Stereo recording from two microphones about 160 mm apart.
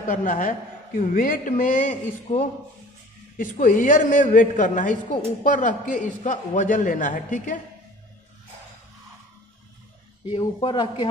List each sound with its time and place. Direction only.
0.1 s a man's voice: 55° left (ahead or behind)
10.2 s speech: 30° left (ahead or behind)